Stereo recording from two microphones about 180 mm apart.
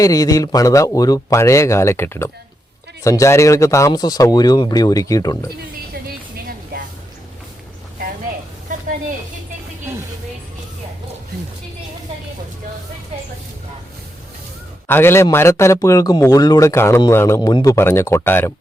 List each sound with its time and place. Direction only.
0.0 s speech: 20° left (ahead or behind)
14.8 s speech: 10° left (ahead or behind)